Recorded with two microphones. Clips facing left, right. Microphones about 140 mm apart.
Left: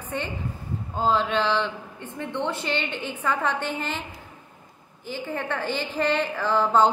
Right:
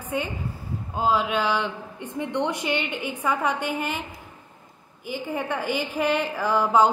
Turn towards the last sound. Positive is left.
turn(degrees=-10)  # may be behind; listen again after turning